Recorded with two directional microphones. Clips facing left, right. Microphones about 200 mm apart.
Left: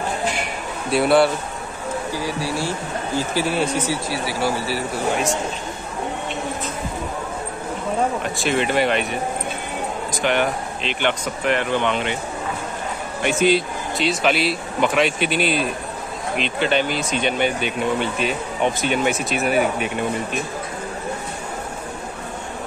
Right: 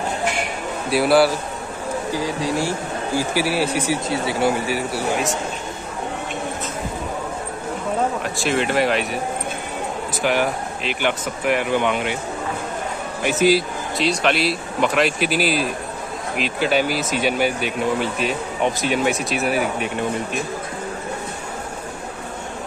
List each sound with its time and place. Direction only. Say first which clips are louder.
0.8 s speech: even; centre (ahead or behind)
2.1 s speech: right 4 dB; 15° right (ahead or behind)
4.1 s a man's voice: right 3 dB; 20° right (ahead or behind)
8.2 s speech: even; centre (ahead or behind)
13.2 s speech: right 1 dB; 5° right (ahead or behind)